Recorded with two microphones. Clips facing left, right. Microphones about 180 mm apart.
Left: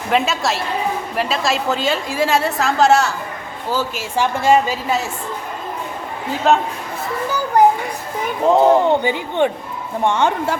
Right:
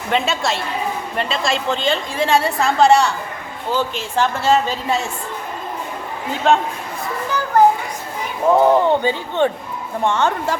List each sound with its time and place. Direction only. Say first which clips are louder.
0.1 s a woman's voice: left 1 dB; centre (ahead or behind)
6.5 s a woman's voice: even; centre (ahead or behind)
7.3 s children playing: even; 10° left (ahead or behind)
8.4 s a woman's voice: left 1 dB; 20° left (ahead or behind)